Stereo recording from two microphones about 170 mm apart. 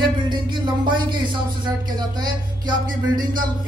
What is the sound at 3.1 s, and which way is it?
Speech, 55° right (ahead or behind).